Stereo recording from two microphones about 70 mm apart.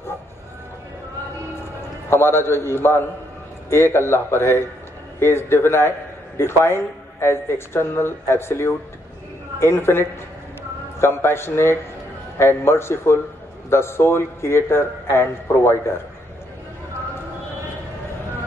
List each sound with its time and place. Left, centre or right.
2.0 s a man's voice: left